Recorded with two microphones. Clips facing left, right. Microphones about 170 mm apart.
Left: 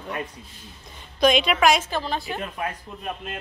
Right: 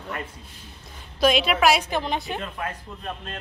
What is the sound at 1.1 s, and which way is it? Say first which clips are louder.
Speech: left 1 dB; 5° right (ahead or behind).